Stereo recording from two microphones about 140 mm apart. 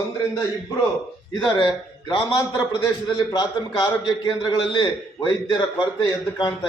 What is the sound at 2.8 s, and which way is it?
A man's voice, 30° left (ahead or behind).